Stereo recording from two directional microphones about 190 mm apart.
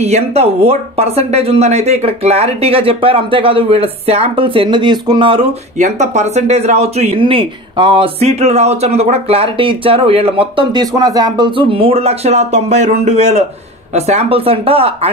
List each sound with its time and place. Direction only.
0.0 s speech: 35° right (ahead or behind)
5.8 s speech: 40° right (ahead or behind)